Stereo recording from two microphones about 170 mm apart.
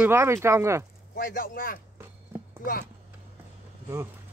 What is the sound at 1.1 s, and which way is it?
Speech, 55° left (ahead or behind).